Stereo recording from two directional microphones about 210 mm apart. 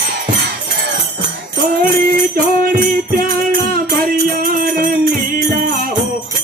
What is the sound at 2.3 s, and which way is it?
Music, 40° right (ahead or behind).